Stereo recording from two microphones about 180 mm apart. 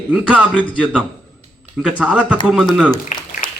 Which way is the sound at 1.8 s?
5° right (ahead or behind).